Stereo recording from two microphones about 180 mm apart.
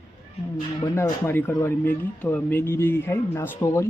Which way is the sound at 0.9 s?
15° left (ahead or behind).